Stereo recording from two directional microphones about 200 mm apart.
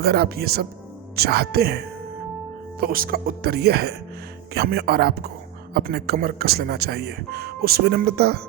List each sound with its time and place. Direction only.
0.0 s speech: 50° right (ahead or behind)
2.8 s speech: 45° right (ahead or behind)